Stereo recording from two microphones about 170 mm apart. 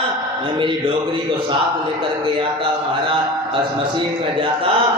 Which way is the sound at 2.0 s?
30° right (ahead or behind).